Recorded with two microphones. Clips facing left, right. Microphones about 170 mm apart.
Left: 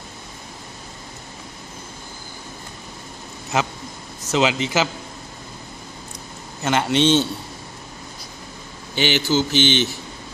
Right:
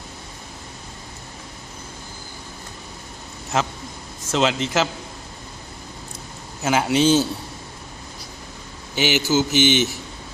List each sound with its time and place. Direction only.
3.5 s a man's voice: centre (ahead or behind)
6.6 s a man's voice: 5° right (ahead or behind)
9.0 s mantra: 5° right (ahead or behind)